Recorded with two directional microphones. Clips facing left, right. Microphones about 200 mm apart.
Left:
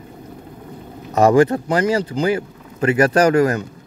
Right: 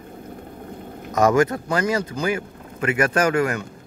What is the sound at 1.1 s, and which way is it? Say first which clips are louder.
A man's voice: left 4 dB; 30° left (ahead or behind).